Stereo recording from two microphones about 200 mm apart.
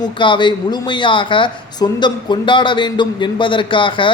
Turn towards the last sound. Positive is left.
turn(degrees=25)  # may be behind; listen again after turning